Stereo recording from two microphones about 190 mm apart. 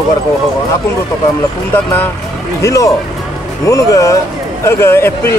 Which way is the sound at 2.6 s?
15° left (ahead or behind).